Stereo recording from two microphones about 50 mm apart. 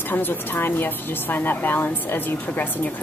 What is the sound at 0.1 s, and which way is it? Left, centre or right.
A woman's voice, left.